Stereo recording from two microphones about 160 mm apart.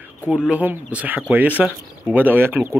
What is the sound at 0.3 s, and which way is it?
Speech, 5° right (ahead or behind).